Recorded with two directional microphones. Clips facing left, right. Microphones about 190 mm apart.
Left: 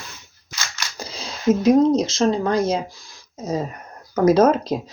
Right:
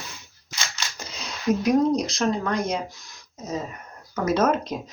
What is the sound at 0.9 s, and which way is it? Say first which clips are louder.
Speech: left 4 dB; 35° left (ahead or behind).